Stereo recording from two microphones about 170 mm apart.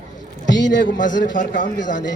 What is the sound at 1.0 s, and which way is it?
Speech, 50° left (ahead or behind).